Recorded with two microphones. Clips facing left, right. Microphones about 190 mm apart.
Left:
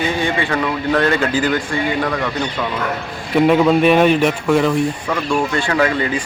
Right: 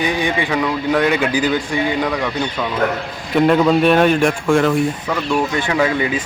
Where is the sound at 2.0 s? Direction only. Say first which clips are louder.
Even; centre (ahead or behind).